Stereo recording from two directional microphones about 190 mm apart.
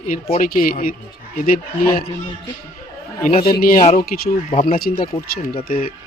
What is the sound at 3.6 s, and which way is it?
Speech, 40° left (ahead or behind).